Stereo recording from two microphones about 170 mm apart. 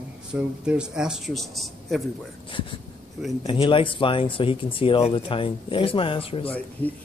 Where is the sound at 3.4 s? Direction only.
30° left (ahead or behind).